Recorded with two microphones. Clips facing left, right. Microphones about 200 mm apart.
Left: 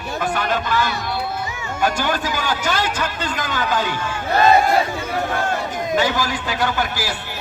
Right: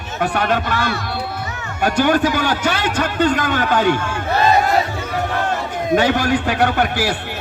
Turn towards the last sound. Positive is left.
turn(degrees=-60)  # may be behind; listen again after turning